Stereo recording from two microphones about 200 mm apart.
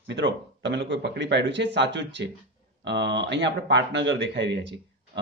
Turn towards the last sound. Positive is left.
turn(degrees=-60)  # may be behind; listen again after turning